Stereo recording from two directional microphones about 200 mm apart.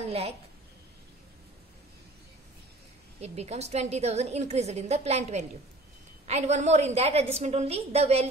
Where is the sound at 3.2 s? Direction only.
30° right (ahead or behind).